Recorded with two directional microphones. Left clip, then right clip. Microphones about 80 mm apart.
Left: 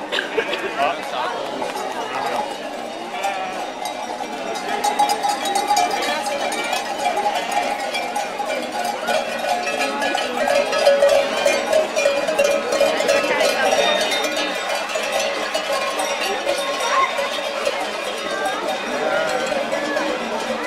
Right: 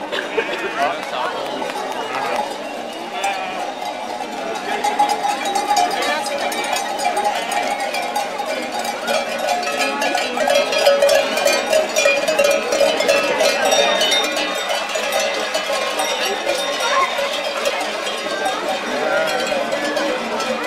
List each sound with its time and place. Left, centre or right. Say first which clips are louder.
9.1 s music: right 2 dB; right
12.4 s cowbell: right 2 dB; centre